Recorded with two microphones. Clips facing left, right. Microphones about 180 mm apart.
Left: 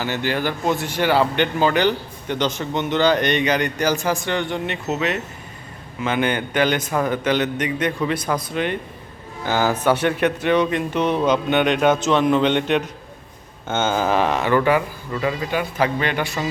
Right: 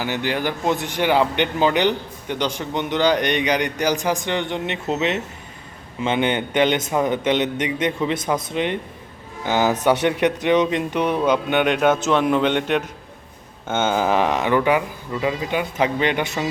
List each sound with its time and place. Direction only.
0.0 s a man's voice: 15° right (ahead or behind)